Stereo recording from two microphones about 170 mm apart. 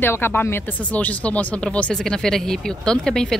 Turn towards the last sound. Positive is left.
turn(degrees=5)  # may be behind; listen again after turning